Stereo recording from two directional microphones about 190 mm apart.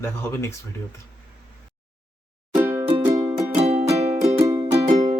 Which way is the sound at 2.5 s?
10° right (ahead or behind).